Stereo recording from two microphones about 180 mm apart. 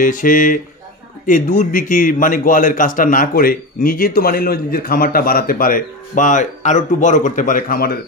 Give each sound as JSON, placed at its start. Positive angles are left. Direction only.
{"t": 0.0, "sound": "a man's voice", "side_deg": 50}